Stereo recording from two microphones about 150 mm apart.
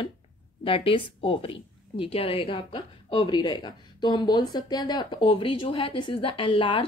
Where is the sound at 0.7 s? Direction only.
35° left (ahead or behind).